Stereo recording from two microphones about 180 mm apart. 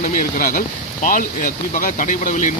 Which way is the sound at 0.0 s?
50° left (ahead or behind).